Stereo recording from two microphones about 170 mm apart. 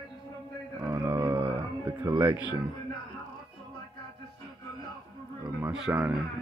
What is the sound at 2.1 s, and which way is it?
Speech, 25° right (ahead or behind).